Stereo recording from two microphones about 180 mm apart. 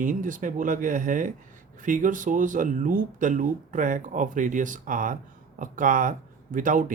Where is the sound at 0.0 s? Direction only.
45° right (ahead or behind).